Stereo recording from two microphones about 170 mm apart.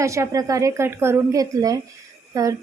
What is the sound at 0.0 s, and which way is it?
A woman's voice, 15° right (ahead or behind).